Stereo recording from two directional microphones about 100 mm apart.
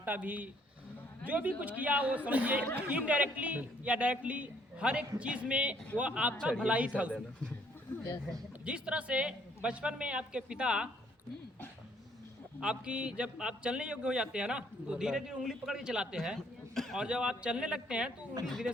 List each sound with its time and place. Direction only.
0.0 s a man's voice: 15° right (ahead or behind)
8.6 s a man's voice: 10° right (ahead or behind)
12.5 s a man's voice: 10° right (ahead or behind)
18.4 s speech: centre (ahead or behind)